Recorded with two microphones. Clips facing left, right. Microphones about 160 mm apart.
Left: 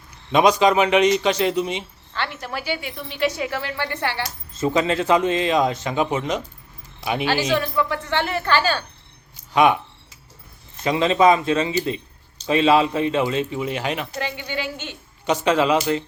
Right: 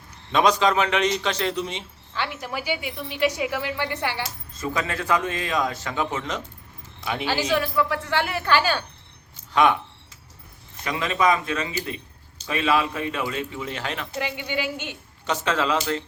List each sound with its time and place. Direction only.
0.3 s a man's voice: 15° left (ahead or behind)
2.1 s a woman's voice: 10° right (ahead or behind)
4.5 s a man's voice: 25° left (ahead or behind)
7.5 s a woman's voice: 5° right (ahead or behind)
9.5 s speech: 10° left (ahead or behind)
10.8 s a man's voice: 25° left (ahead or behind)
14.2 s a woman's voice: 10° right (ahead or behind)
15.3 s a man's voice: 15° left (ahead or behind)